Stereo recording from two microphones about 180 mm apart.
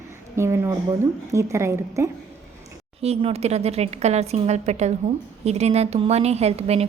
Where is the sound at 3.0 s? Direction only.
35° right (ahead or behind).